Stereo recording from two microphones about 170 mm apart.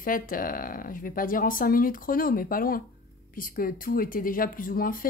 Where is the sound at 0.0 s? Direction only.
55° left (ahead or behind).